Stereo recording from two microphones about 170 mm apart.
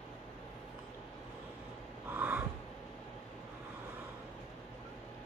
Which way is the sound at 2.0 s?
10° right (ahead or behind).